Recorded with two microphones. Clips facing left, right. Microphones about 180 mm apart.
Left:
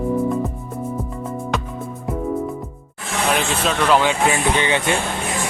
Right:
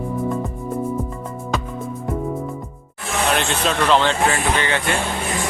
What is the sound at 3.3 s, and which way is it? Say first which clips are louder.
Speech: left 1 dB; centre (ahead or behind).